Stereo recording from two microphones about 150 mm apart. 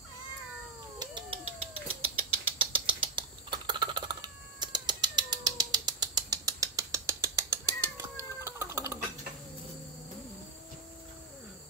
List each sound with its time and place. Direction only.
0.9 s cat: 35° right (ahead or behind)
8.0 s chicken: 15° right (ahead or behind)